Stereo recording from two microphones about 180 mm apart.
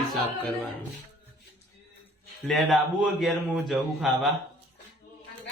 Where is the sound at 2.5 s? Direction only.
Centre (ahead or behind).